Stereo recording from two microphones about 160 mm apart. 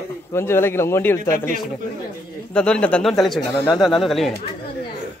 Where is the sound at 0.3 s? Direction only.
15° left (ahead or behind).